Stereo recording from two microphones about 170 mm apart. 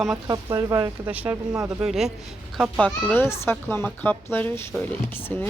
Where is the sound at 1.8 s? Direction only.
5° right (ahead or behind).